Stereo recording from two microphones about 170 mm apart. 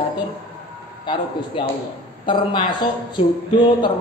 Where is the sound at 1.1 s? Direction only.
25° left (ahead or behind).